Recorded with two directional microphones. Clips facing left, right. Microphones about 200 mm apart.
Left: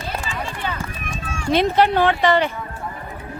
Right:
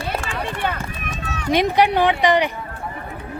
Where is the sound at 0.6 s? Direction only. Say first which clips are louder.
Right 4 dB; 55° right (ahead or behind).